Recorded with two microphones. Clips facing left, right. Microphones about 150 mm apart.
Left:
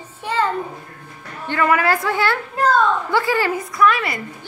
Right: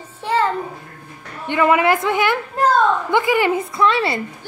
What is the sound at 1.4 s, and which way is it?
A woman's voice, 20° right (ahead or behind).